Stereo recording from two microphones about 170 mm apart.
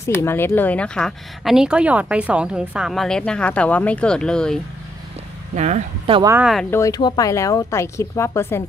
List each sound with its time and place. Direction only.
0.0 s speech: 15° left (ahead or behind)
5.6 s speech: 45° right (ahead or behind)
6.4 s speech: centre (ahead or behind)
6.7 s speech: 20° left (ahead or behind)